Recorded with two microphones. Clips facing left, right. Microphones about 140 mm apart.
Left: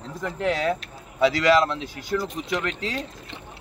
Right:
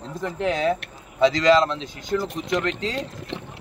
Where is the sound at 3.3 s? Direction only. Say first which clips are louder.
Right 12 dB; 90° right.